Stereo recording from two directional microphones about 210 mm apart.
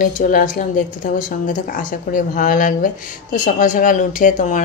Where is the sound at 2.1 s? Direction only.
40° left (ahead or behind).